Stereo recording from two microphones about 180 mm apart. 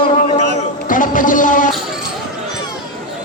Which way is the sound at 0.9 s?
50° left (ahead or behind).